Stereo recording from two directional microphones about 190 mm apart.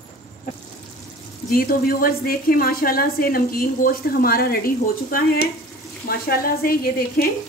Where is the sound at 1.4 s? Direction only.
50° left (ahead or behind).